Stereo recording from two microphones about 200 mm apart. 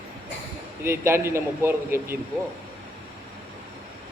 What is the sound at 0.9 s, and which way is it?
Speech, 10° right (ahead or behind).